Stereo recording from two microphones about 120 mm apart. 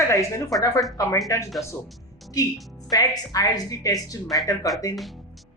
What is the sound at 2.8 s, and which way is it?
A woman's voice, 30° left (ahead or behind).